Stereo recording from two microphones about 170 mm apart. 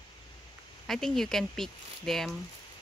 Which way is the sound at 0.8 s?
5° left (ahead or behind).